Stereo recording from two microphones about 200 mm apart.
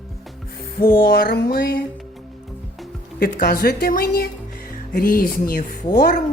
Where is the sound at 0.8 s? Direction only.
50° left (ahead or behind).